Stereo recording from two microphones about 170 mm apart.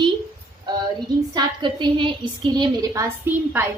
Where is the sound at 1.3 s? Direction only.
25° right (ahead or behind).